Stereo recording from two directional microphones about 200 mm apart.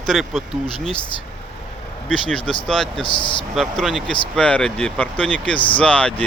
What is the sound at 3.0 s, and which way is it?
Speech, 25° left (ahead or behind).